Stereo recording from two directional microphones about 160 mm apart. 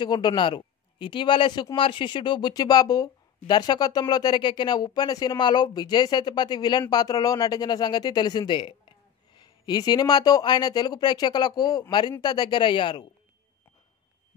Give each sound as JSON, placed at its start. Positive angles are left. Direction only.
{"t": 0.0, "sound": "speech", "side_deg": 30}